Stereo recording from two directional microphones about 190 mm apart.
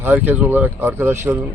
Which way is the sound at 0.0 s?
10° right (ahead or behind).